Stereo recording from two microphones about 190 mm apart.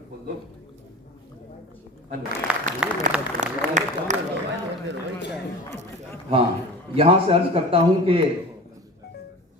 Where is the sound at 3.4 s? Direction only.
40° right (ahead or behind).